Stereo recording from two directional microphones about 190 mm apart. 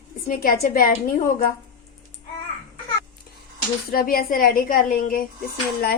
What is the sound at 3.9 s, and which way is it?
Speech, 50° left (ahead or behind).